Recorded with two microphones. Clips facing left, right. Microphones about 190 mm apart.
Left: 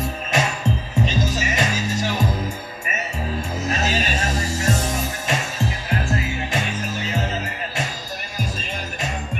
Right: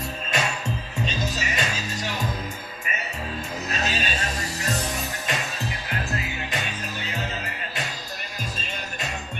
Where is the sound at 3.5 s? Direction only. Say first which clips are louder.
Left 5 dB; 25° left (ahead or behind).